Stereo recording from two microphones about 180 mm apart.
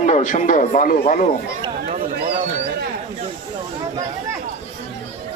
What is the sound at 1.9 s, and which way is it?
Speech, 40° right (ahead or behind).